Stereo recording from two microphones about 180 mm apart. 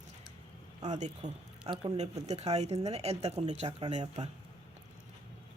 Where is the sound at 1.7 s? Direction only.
30° right (ahead or behind).